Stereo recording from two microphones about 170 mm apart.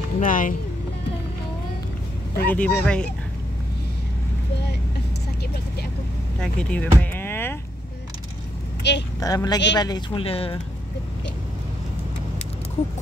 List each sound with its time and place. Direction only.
0.2 s speech: 50° left (ahead or behind)
2.3 s speech: 10° left (ahead or behind)
6.4 s speech: 10° left (ahead or behind)
7.0 s a sound: 10° left (ahead or behind)
8.8 s speech: 90° left
9.2 s speech: 20° left (ahead or behind)